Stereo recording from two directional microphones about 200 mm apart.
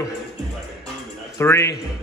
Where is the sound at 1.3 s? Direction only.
15° left (ahead or behind).